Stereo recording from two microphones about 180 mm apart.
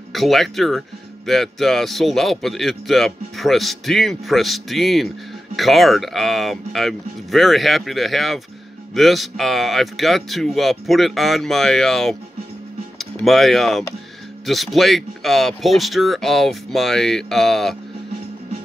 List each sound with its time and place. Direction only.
0.1 s speech: centre (ahead or behind)
13.2 s speech: centre (ahead or behind)